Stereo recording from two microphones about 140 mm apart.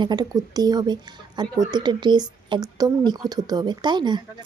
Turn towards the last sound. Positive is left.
turn(degrees=-30)  # may be behind; listen again after turning